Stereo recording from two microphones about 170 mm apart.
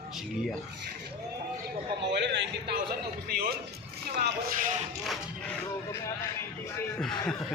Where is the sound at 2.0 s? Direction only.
90° right.